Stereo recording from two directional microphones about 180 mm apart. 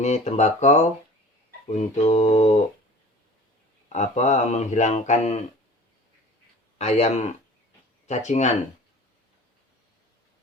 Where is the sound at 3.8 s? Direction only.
40° left (ahead or behind).